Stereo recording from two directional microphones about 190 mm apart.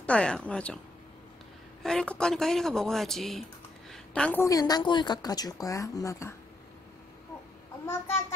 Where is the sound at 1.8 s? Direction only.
5° left (ahead or behind).